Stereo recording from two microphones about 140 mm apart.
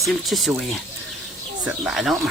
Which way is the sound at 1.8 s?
Centre (ahead or behind).